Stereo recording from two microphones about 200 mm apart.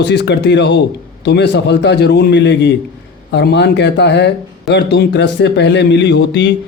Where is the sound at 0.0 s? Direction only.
55° left (ahead or behind).